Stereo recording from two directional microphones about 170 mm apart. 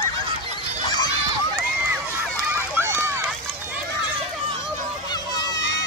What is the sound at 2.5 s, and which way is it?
Run, 15° right (ahead or behind).